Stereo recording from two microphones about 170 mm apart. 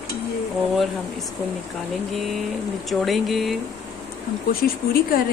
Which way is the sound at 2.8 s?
Centre (ahead or behind).